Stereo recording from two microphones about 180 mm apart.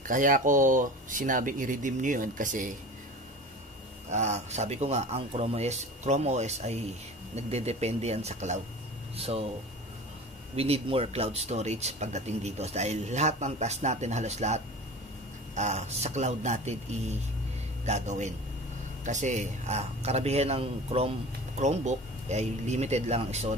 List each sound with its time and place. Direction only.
0.0 s speech: 45° right (ahead or behind)
4.1 s speech: 40° right (ahead or behind)
10.5 s speech: 35° right (ahead or behind)